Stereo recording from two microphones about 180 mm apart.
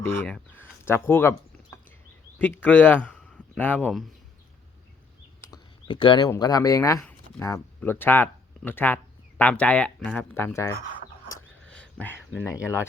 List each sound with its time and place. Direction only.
0.2 s speech: 10° left (ahead or behind)
2.4 s speech: 10° left (ahead or behind)
5.9 s speech: 25° left (ahead or behind)
11.6 s a sound: 5° left (ahead or behind)